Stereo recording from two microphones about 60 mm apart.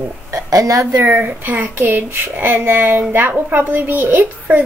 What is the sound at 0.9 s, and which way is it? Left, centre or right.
Speech, right.